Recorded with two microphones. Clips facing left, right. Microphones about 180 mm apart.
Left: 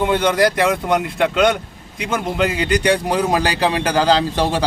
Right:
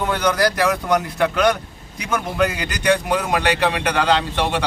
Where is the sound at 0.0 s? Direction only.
25° left (ahead or behind).